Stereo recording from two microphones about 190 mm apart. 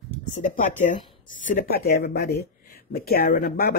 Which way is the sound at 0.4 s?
40° left (ahead or behind).